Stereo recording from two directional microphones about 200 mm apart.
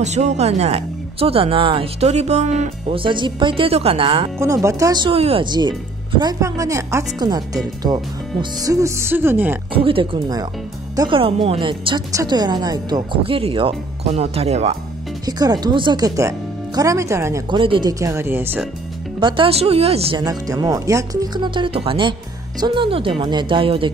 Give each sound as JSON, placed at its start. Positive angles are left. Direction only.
{"t": 0.0, "sound": "speech", "side_deg": -35}
{"t": 4.4, "sound": "speech", "side_deg": -15}
{"t": 9.7, "sound": "speech", "side_deg": -25}
{"t": 15.2, "sound": "speech", "side_deg": -20}
{"t": 17.6, "sound": "speech", "side_deg": -25}
{"t": 19.1, "sound": "speech", "side_deg": -25}